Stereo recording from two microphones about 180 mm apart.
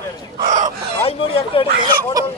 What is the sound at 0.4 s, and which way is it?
Fowl, 45° right (ahead or behind).